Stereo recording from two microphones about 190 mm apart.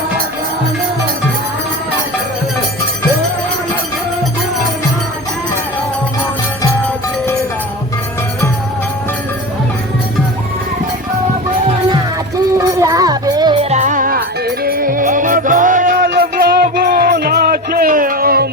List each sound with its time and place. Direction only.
12.5 s music: 15° right (ahead or behind); by 16.0 s 45° right (ahead or behind)
16.0 s music: 55° right (ahead or behind)